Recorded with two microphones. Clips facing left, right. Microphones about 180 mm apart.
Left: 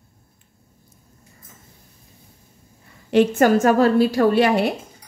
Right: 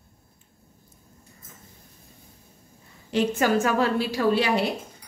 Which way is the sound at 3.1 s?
55° left (ahead or behind).